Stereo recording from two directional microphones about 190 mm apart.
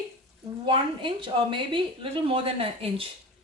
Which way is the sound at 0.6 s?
25° right (ahead or behind).